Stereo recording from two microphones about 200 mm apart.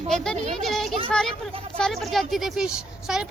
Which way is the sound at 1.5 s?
30° right (ahead or behind).